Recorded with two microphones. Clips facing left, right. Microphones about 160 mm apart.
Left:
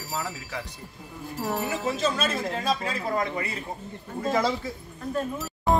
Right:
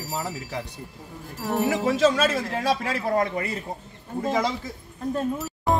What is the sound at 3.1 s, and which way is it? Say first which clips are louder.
Speech: right 5 dB; 50° right (ahead or behind).